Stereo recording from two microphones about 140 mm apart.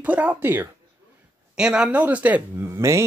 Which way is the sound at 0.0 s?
10° right (ahead or behind).